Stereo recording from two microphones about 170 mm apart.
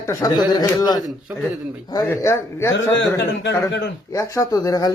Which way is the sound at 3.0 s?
90° left.